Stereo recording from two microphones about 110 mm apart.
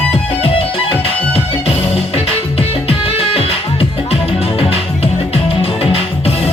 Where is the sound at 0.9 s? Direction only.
65° left (ahead or behind).